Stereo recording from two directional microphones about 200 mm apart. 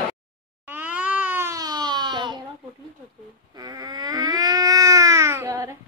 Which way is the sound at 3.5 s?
20° right (ahead or behind).